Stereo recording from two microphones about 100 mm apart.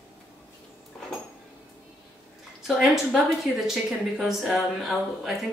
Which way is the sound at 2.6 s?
5° right (ahead or behind).